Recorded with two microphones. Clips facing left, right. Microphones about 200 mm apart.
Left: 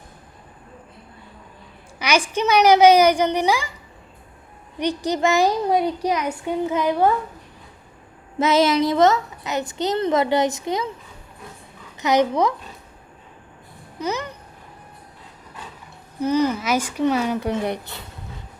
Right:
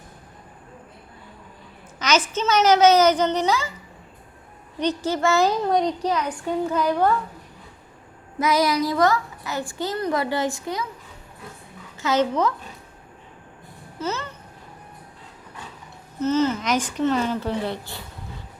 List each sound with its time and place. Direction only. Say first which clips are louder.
2.0 s speech: left 1 dB; 10° left (ahead or behind)
4.8 s speech: left 1 dB; 15° left (ahead or behind)
8.4 s a child's voice: left 3 dB; 25° left (ahead or behind)
11.9 s speech: left 3 dB; 15° left (ahead or behind)
14.0 s speech: left 2 dB; 15° left (ahead or behind)
16.2 s speech: left 1 dB; 15° left (ahead or behind)